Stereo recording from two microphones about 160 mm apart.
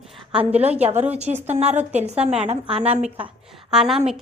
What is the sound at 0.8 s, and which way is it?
A woman's voice, 40° right (ahead or behind).